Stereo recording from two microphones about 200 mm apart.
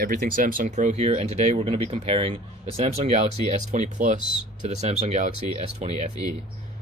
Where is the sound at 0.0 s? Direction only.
45° right (ahead or behind).